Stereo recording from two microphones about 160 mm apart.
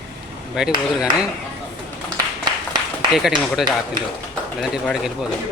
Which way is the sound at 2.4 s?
25° right (ahead or behind).